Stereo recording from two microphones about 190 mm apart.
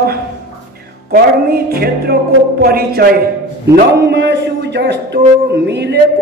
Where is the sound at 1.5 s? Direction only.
55° right (ahead or behind).